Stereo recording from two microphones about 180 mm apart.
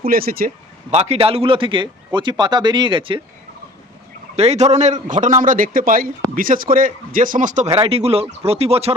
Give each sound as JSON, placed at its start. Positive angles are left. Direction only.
{"t": 0.0, "sound": "speech", "side_deg": -55}
{"t": 0.9, "sound": "a man's voice", "side_deg": -35}
{"t": 4.4, "sound": "a man's voice", "side_deg": -40}